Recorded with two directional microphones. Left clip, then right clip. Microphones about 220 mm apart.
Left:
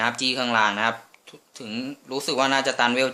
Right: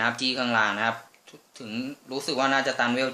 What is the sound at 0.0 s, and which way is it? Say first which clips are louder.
Speech: left 2 dB; 15° left (ahead or behind).